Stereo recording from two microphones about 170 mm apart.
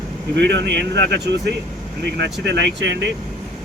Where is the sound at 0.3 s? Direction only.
90° right.